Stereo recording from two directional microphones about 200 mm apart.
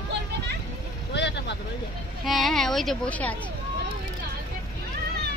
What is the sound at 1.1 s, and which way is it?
Speech, 60° left (ahead or behind).